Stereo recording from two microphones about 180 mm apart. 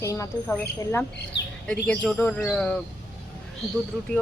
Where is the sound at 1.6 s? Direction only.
5° left (ahead or behind).